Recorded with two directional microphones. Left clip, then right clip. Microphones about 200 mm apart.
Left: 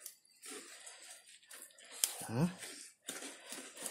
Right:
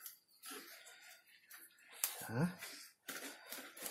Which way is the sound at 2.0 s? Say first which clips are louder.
Left 3 dB; 10° left (ahead or behind).